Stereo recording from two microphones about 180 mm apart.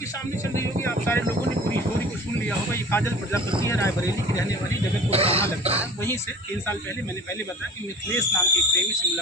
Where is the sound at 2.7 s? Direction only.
15° left (ahead or behind).